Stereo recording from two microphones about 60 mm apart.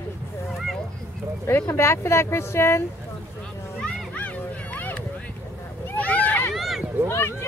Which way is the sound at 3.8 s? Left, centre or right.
Left.